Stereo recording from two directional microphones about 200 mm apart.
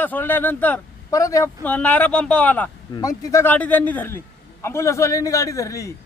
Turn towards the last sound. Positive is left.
turn(degrees=15)  # may be behind; listen again after turning